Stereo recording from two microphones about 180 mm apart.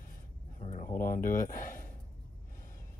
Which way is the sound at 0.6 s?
40° left (ahead or behind).